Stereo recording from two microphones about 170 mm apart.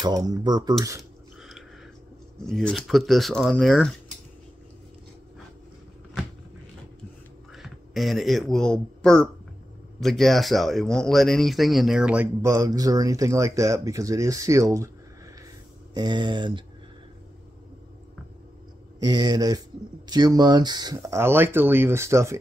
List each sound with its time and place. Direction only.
0.0 s speech: 20° right (ahead or behind)
2.4 s speech: centre (ahead or behind)
7.5 s speech: centre (ahead or behind); by 14.9 s 20° right (ahead or behind)
15.9 s speech: 25° right (ahead or behind)
18.9 s speech: 25° right (ahead or behind)